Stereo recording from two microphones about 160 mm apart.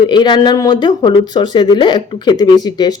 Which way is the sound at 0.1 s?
30° left (ahead or behind).